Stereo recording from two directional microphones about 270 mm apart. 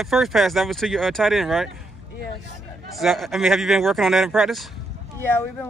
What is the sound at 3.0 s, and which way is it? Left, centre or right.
Speech, centre.